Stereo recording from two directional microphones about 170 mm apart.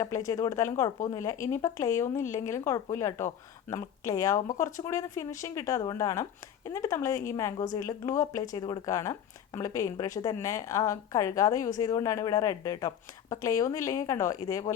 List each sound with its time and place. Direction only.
0.0 s a woman's voice: 20° left (ahead or behind)